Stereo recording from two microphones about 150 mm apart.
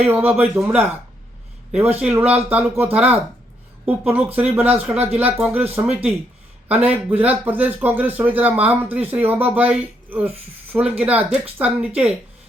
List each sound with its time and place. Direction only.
0.0 s speech: 15° right (ahead or behind)
5.9 s speech: 45° right (ahead or behind)
6.7 s speech: 10° right (ahead or behind)